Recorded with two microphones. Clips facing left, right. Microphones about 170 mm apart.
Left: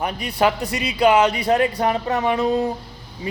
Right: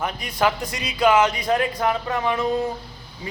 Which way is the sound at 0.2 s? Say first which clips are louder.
Left 3 dB; 30° left (ahead or behind).